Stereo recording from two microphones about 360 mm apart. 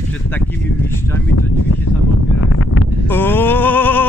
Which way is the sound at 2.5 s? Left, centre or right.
Left.